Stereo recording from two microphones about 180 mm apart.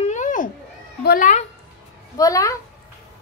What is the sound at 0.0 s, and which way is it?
Children playing, 40° left (ahead or behind).